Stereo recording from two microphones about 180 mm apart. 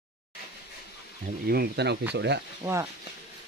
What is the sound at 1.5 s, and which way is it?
Speech, 65° right (ahead or behind).